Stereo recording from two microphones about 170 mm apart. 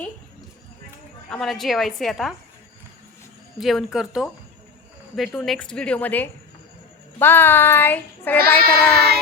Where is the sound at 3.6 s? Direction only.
Centre (ahead or behind).